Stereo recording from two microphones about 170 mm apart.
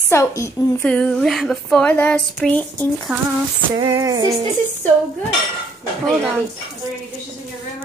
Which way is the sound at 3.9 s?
20° right (ahead or behind).